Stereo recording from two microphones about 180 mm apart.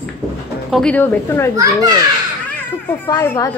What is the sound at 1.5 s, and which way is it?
Speech, 20° right (ahead or behind).